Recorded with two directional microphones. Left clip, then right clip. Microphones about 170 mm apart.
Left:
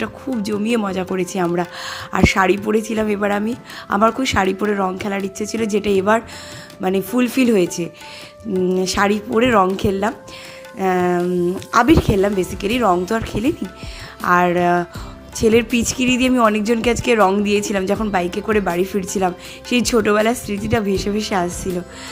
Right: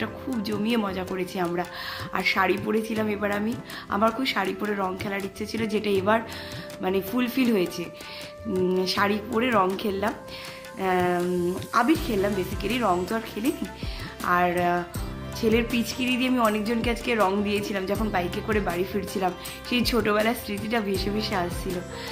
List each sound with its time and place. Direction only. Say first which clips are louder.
0.0 s speech: left 6 dB; 40° left (ahead or behind)
11.7 s speech: left 9 dB; 50° left (ahead or behind)